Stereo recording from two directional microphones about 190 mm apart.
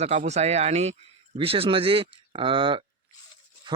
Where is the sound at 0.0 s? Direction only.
35° right (ahead or behind).